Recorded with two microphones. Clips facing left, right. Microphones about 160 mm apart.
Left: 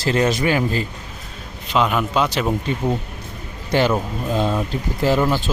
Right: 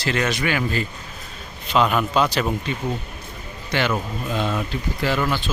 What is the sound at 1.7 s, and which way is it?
Speech, 10° left (ahead or behind).